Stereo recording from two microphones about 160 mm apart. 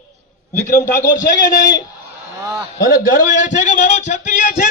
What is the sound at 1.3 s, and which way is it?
Speech, 20° left (ahead or behind).